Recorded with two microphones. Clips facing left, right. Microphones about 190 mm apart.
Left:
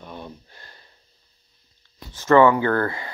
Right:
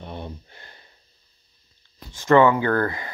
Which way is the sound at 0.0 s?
25° right (ahead or behind).